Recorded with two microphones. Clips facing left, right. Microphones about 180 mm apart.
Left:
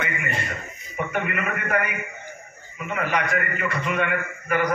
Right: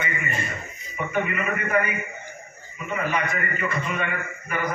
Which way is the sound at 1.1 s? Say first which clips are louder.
Right 3 dB; 70° left (ahead or behind).